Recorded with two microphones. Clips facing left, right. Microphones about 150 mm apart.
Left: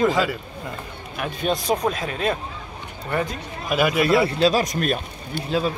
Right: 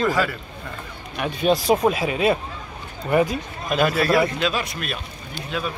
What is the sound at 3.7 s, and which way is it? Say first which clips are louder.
Speech: even; 10° left (ahead or behind).